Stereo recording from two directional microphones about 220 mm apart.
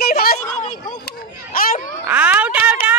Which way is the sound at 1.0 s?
40° left (ahead or behind).